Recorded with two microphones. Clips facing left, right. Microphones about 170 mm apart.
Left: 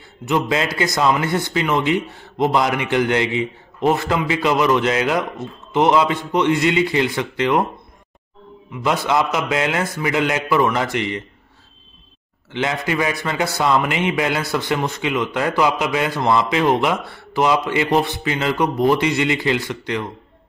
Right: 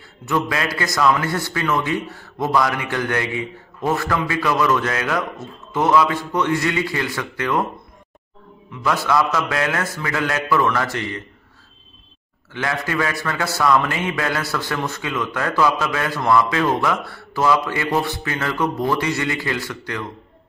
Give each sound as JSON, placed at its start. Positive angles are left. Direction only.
{"t": 0.2, "sound": "a man's voice", "side_deg": 20}
{"t": 8.8, "sound": "a man's voice", "side_deg": 20}
{"t": 12.5, "sound": "a man's voice", "side_deg": 20}